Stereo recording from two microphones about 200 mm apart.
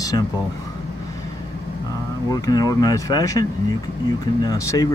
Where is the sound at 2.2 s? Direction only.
20° left (ahead or behind).